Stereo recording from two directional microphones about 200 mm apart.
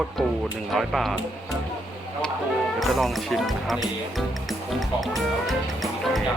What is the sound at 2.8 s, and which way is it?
Speech, centre (ahead or behind).